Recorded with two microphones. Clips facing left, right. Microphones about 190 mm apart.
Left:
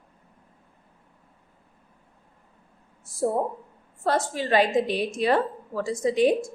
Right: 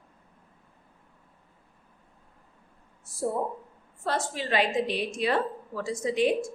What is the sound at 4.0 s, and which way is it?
A woman's voice, 45° left (ahead or behind).